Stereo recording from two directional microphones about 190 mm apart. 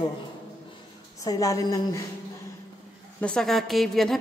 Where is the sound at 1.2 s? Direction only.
20° left (ahead or behind).